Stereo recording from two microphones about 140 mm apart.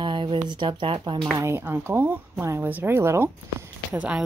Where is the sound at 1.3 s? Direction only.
15° right (ahead or behind).